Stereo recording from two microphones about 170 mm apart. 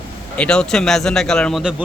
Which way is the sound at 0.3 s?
5° left (ahead or behind).